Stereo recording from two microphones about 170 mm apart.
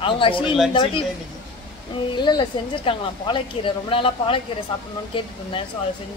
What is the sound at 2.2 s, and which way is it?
A woman's voice, 25° left (ahead or behind).